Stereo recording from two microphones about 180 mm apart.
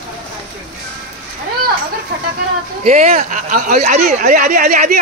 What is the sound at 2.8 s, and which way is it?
Speech, 40° right (ahead or behind).